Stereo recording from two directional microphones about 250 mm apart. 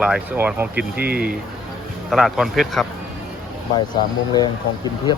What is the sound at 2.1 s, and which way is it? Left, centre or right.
Speech, centre.